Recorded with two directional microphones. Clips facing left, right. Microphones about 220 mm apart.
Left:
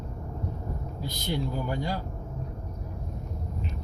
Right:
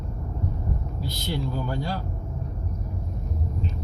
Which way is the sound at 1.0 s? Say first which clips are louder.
Even; 15° left (ahead or behind).